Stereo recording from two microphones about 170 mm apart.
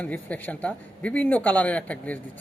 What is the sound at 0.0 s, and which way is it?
Speech, 10° left (ahead or behind).